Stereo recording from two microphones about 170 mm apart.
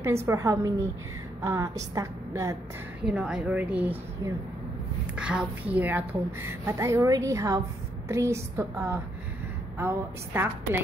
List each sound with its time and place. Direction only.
0.0 s a woman's voice: 15° right (ahead or behind)
3.1 s a woman's voice: 5° right (ahead or behind)